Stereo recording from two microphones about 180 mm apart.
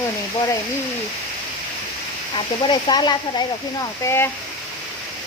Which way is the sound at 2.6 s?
25° left (ahead or behind).